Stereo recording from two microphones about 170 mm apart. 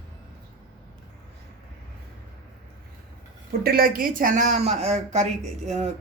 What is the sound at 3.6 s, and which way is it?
Speech, 60° right (ahead or behind).